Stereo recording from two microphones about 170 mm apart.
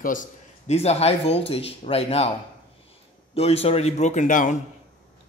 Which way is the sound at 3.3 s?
35° left (ahead or behind).